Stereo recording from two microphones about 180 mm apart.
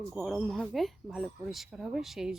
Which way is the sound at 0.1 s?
Centre (ahead or behind).